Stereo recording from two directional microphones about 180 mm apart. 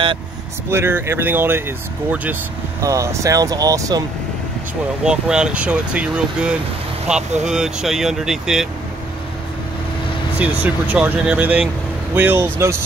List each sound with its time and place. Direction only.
0.7 s speech: 15° right (ahead or behind)
2.8 s speech: 15° right (ahead or behind)
5.0 s speech: 5° right (ahead or behind)
10.4 s speech: 10° right (ahead or behind)